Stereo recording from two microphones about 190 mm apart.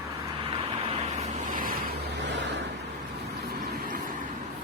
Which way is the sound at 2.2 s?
70° right (ahead or behind).